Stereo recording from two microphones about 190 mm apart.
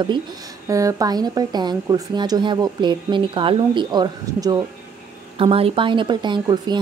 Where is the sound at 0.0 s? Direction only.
25° right (ahead or behind).